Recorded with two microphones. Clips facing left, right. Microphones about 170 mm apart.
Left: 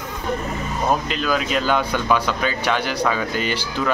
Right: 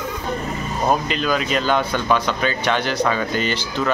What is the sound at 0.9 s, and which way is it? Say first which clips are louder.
Speech: right 1 dB; centre (ahead or behind).